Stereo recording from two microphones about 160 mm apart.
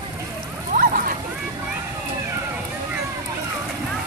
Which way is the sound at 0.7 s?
60° right (ahead or behind).